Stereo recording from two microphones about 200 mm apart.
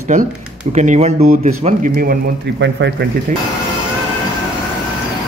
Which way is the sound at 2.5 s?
60° right (ahead or behind).